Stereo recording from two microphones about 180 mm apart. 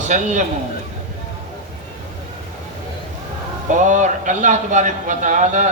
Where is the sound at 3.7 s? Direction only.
45° right (ahead or behind).